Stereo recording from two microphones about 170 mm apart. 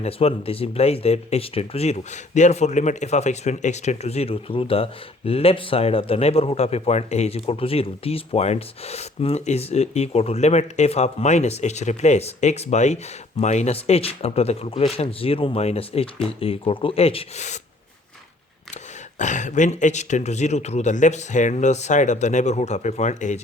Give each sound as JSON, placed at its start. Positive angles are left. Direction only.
{"t": 0.0, "sound": "speech", "side_deg": 35}
{"t": 19.2, "sound": "speech", "side_deg": 45}